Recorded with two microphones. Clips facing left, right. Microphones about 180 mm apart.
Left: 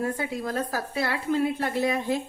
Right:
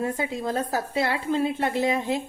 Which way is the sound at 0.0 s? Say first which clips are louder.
Right 1 dB; 20° right (ahead or behind).